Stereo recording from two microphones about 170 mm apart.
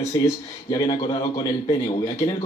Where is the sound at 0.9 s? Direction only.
30° left (ahead or behind).